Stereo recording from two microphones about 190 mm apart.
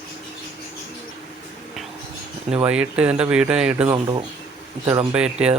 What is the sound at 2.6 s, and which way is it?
A man's voice, 5° right (ahead or behind).